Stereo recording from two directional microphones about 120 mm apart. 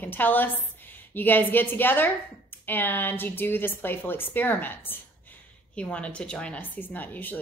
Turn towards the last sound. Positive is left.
turn(degrees=15)  # may be behind; listen again after turning